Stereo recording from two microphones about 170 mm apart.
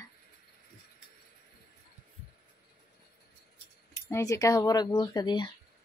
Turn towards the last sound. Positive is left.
turn(degrees=25)  # may be behind; listen again after turning